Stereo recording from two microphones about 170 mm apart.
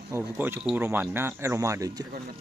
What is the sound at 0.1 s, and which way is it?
Speech, 15° right (ahead or behind).